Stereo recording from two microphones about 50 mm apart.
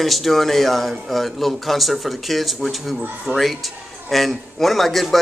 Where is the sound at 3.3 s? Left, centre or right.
Right.